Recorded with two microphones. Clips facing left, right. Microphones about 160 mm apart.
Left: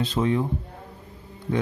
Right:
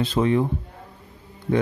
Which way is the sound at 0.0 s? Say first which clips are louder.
Right 3 dB; 70° right (ahead or behind).